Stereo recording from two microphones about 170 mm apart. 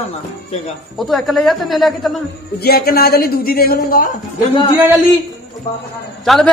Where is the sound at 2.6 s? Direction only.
65° left (ahead or behind).